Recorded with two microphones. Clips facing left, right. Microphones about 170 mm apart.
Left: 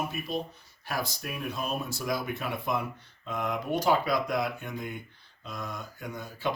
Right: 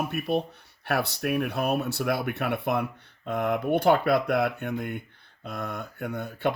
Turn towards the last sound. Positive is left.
turn(degrees=-60)  # may be behind; listen again after turning